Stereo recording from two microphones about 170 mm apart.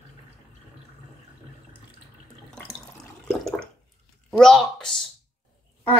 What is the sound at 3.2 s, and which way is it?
Water, 5° left (ahead or behind).